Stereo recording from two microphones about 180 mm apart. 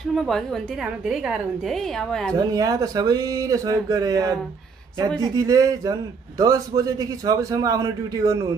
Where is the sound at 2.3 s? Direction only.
20° right (ahead or behind).